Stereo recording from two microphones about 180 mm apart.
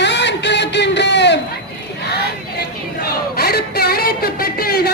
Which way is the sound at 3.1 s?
60° left (ahead or behind).